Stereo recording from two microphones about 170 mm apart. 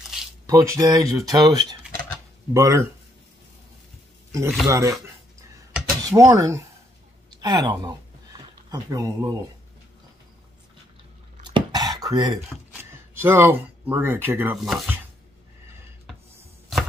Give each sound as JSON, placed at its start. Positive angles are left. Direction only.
{"t": 0.5, "sound": "speech", "side_deg": -20}
{"t": 4.6, "sound": "speech", "side_deg": -15}
{"t": 6.0, "sound": "speech", "side_deg": -20}
{"t": 7.2, "sound": "a sound", "side_deg": -25}
{"t": 11.4, "sound": "a sound", "side_deg": -25}
{"t": 13.2, "sound": "speech", "side_deg": -15}